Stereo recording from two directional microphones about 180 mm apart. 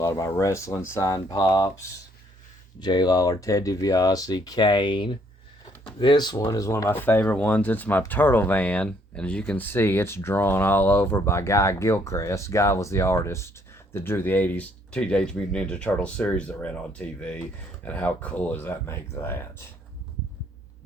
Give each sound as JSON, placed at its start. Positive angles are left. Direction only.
{"t": 0.0, "sound": "speech", "side_deg": 15}
{"t": 2.8, "sound": "speech", "side_deg": 25}